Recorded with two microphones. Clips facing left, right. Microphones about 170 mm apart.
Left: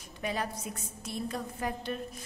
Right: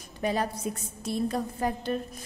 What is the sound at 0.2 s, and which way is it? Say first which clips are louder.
A woman's voice: right 6 dB; 35° right (ahead or behind).